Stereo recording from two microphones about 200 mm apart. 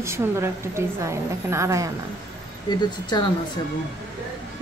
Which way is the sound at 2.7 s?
20° left (ahead or behind).